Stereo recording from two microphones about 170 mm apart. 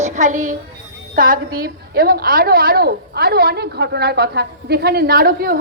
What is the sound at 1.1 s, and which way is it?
A woman's voice, 55° right (ahead or behind).